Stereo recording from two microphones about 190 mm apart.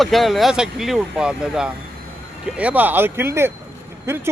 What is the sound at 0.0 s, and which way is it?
Speech, centre (ahead or behind).